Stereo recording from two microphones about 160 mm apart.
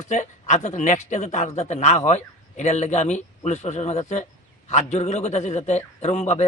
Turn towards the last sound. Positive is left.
turn(degrees=45)  # may be behind; listen again after turning